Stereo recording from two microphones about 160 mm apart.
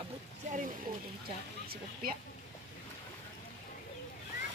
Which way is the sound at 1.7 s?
65° right (ahead or behind).